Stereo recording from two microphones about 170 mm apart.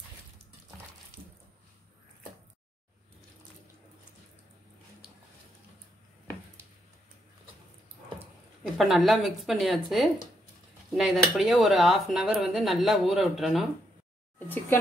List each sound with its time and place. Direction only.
8.6 s speech: centre (ahead or behind)